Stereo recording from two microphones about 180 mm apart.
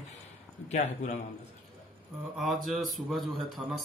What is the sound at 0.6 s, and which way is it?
Speech, 40° left (ahead or behind).